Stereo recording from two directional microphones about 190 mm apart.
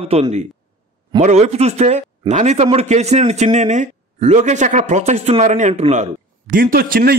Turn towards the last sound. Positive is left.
turn(degrees=-50)  # may be behind; listen again after turning